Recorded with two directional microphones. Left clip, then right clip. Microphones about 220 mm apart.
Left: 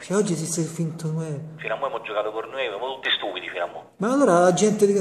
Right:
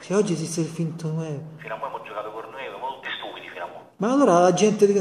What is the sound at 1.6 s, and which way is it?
A man's voice, 50° left (ahead or behind).